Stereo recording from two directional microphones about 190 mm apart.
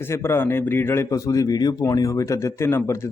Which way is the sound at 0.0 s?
15° left (ahead or behind).